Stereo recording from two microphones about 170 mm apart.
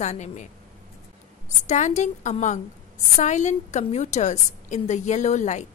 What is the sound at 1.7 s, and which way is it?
A woman's voice, 45° left (ahead or behind).